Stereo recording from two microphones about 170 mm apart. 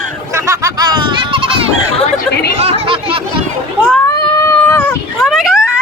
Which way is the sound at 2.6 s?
35° right (ahead or behind).